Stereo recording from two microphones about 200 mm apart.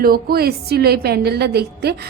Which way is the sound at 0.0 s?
50° right (ahead or behind).